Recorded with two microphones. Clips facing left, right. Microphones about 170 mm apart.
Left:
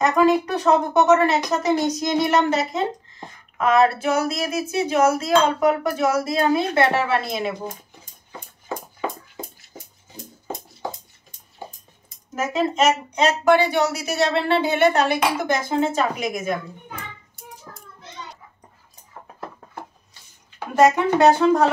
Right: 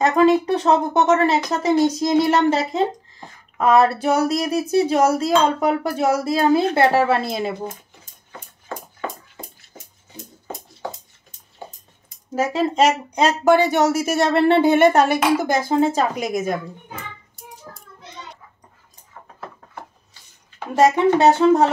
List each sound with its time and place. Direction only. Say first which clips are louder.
0.1 s speech: right 2 dB; 25° right (ahead or behind)
12.4 s a woman's voice: right 3 dB; 35° right (ahead or behind)
20.7 s speech: right 1 dB; 30° right (ahead or behind)